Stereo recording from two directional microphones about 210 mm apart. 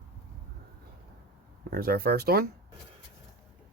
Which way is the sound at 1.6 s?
45° right (ahead or behind).